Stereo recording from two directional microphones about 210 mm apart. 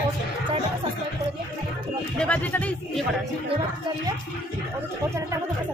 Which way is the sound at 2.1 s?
5° left (ahead or behind).